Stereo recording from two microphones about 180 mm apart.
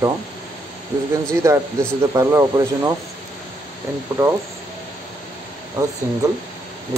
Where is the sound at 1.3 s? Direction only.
15° right (ahead or behind).